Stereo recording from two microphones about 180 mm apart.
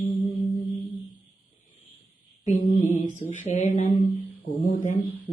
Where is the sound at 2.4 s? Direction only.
40° left (ahead or behind).